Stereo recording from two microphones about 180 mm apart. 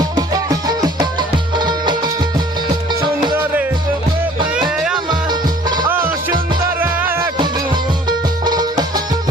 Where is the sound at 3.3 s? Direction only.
10° right (ahead or behind).